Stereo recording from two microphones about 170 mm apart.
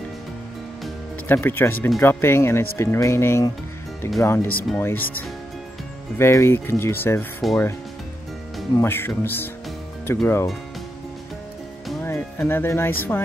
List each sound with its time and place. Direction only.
1.2 s speech: 10° left (ahead or behind)
8.7 s speech: 15° left (ahead or behind)
12.0 s speech: 15° left (ahead or behind)